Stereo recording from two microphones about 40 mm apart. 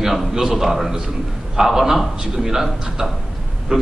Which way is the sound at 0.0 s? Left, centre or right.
Centre.